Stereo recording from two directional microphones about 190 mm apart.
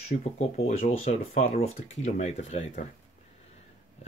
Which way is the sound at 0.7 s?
40° left (ahead or behind).